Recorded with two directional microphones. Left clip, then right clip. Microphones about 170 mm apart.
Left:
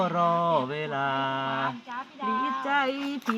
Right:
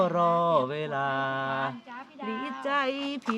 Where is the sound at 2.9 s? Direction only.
5° right (ahead or behind).